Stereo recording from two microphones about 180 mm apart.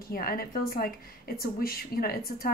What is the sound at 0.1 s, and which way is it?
A woman's voice, 55° left (ahead or behind).